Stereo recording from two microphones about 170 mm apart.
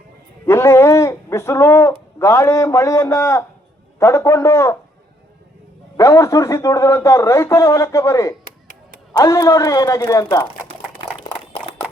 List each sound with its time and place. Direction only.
0.4 s a man's voice: 15° left (ahead or behind)
6.0 s a man's voice: 20° left (ahead or behind)